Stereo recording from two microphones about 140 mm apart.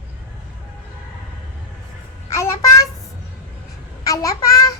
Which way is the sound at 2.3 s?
20° left (ahead or behind).